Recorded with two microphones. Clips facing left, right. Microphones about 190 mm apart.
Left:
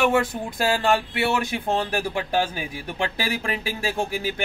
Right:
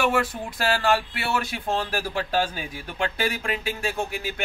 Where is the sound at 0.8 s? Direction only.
20° left (ahead or behind).